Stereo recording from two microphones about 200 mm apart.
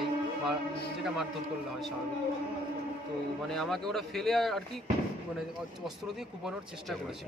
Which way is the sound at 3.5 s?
Centre (ahead or behind).